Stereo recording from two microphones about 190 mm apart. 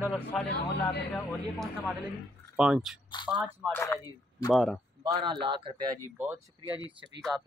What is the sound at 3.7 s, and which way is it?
Speech, 15° left (ahead or behind).